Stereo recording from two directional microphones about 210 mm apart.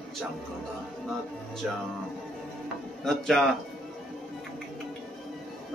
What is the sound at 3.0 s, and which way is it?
Speech, centre (ahead or behind).